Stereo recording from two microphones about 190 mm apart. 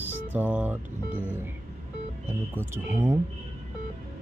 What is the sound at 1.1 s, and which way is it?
Speech, 10° left (ahead or behind).